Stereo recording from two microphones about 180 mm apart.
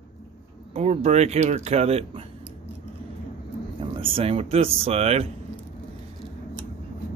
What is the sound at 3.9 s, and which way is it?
Speech, 30° right (ahead or behind).